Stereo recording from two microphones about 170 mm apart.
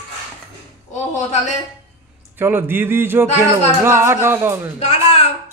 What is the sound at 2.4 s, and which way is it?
Music, 15° right (ahead or behind).